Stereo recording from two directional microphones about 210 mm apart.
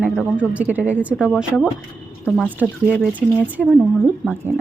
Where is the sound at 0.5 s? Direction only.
5° right (ahead or behind).